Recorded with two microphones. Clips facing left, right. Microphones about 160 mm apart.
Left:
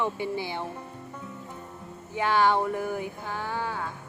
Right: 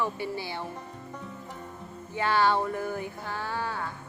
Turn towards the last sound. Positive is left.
turn(degrees=15)  # may be behind; listen again after turning